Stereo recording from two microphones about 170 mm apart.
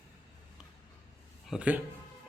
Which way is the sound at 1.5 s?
5° right (ahead or behind).